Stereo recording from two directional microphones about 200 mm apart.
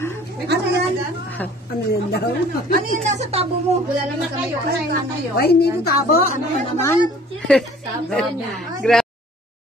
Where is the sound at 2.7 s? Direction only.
35° right (ahead or behind).